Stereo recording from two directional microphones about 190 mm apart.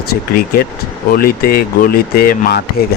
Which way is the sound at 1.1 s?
50° left (ahead or behind).